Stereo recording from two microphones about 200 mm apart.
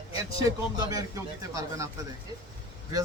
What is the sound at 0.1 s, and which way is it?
Speech, 20° right (ahead or behind).